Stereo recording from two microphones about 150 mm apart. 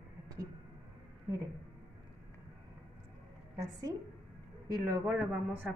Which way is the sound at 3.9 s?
20° right (ahead or behind).